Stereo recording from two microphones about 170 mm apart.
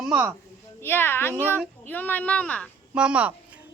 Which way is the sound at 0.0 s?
5° right (ahead or behind).